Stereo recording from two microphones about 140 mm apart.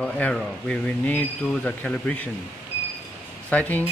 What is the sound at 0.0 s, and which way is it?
Speech, 10° left (ahead or behind).